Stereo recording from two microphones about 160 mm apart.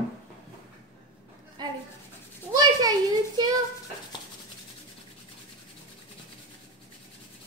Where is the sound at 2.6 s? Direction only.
25° right (ahead or behind).